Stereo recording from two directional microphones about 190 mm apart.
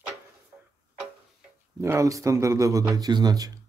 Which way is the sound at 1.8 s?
15° right (ahead or behind).